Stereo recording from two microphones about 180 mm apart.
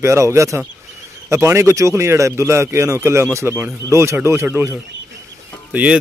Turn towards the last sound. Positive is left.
turn(degrees=-5)  # may be behind; listen again after turning